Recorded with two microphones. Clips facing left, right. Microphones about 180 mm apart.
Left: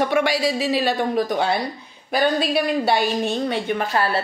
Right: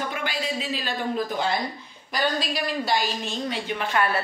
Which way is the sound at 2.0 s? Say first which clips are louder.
Left 6 dB; 60° left (ahead or behind).